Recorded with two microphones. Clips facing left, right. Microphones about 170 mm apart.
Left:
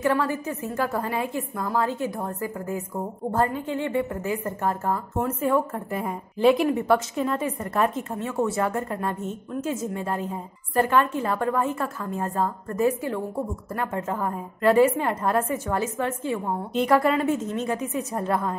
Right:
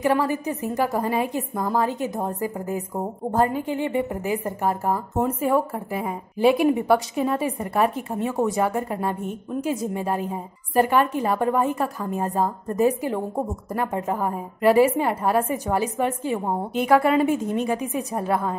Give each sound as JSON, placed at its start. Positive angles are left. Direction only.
{"t": 0.0, "sound": "a woman's voice", "side_deg": -15}